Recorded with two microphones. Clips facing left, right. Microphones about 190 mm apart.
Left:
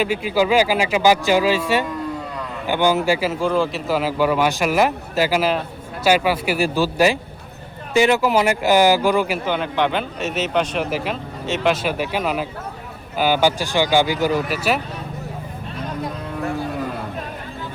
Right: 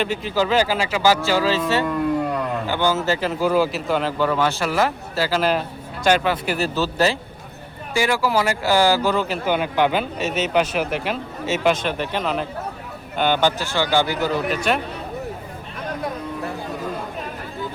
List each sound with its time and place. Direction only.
0.0 s a man's voice: 10° left (ahead or behind)
3.4 s a man's voice: 5° right (ahead or behind); by 5.4 s 15° left (ahead or behind)
5.4 s a man's voice: 5° left (ahead or behind)
9.5 s a man's voice: 5° right (ahead or behind)